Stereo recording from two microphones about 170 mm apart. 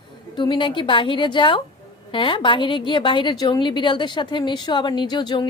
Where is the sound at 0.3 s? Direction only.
30° left (ahead or behind).